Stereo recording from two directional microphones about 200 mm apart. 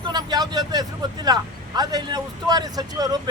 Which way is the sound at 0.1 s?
20° right (ahead or behind).